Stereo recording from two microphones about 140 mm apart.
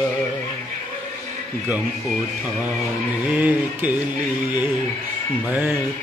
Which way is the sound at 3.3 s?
10° right (ahead or behind).